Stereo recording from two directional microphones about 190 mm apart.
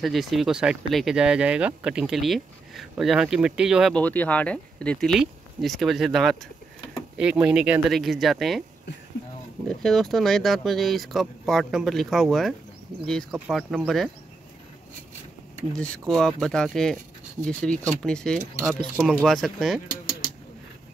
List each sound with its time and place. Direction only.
0.0 s speech: centre (ahead or behind)
9.7 s speech: centre (ahead or behind)
15.7 s speech: 5° left (ahead or behind)